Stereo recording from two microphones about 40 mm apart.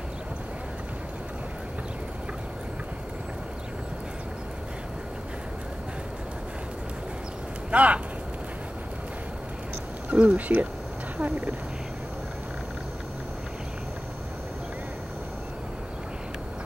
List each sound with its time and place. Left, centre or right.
7.7 s speech: right
10.0 s speech: right
11.1 s speech: right